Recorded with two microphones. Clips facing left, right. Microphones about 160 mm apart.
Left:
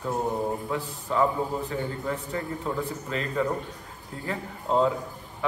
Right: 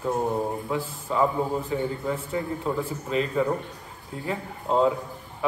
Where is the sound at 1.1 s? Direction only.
15° right (ahead or behind).